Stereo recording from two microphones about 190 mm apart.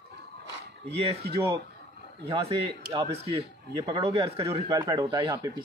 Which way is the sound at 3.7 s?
20° right (ahead or behind).